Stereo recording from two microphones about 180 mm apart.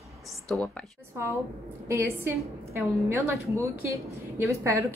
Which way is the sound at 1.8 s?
15° right (ahead or behind).